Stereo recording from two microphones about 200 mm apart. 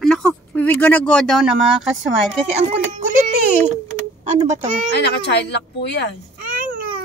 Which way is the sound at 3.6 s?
35° right (ahead or behind).